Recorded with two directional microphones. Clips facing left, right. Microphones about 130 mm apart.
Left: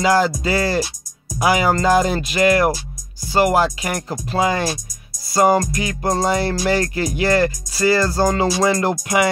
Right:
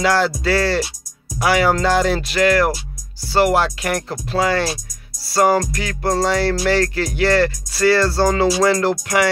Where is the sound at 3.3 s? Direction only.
5° left (ahead or behind).